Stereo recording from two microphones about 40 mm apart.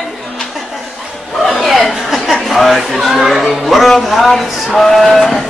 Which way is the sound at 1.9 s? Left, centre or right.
Centre.